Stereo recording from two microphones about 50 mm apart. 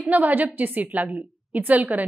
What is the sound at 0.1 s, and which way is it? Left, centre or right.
A woman's voice, right.